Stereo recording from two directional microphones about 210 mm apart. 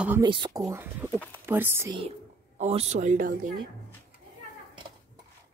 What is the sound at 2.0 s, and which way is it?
A woman's voice, 30° right (ahead or behind).